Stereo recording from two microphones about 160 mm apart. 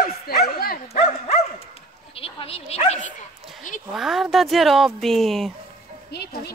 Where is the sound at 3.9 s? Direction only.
Centre (ahead or behind).